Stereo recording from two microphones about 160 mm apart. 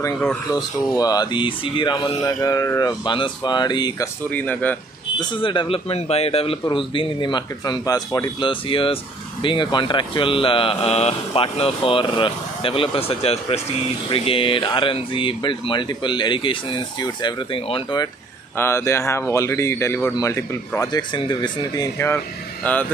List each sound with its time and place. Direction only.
0.5 s speech: 25° left (ahead or behind)
4.3 s speech: 10° left (ahead or behind)
5.2 s speech: 30° left (ahead or behind)
18.6 s speech: 15° left (ahead or behind)